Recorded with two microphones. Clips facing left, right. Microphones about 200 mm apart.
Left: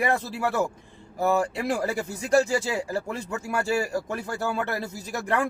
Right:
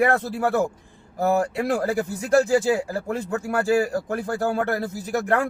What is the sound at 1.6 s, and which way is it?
A man's voice, 55° right (ahead or behind).